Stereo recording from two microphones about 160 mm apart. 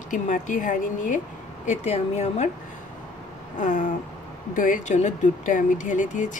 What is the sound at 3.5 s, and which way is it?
Speech, 50° left (ahead or behind).